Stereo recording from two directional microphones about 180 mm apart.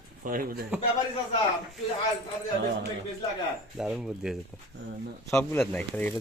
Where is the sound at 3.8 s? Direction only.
5° right (ahead or behind).